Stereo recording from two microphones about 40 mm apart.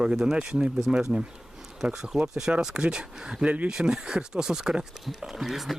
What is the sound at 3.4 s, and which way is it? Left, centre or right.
Speech, right.